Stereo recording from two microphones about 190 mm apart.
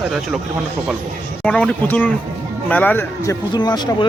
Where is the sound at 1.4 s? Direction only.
5° left (ahead or behind).